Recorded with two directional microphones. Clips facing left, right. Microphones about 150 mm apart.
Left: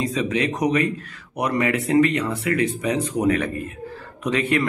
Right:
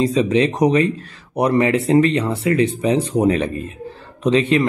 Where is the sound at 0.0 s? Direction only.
30° right (ahead or behind).